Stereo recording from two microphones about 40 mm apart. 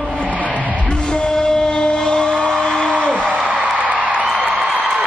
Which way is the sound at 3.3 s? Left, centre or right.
Right.